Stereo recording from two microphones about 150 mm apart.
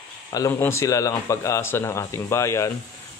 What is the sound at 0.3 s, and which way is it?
Speech, 20° left (ahead or behind).